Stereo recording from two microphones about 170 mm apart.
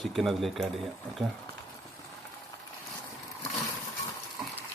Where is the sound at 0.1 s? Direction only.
Centre (ahead or behind).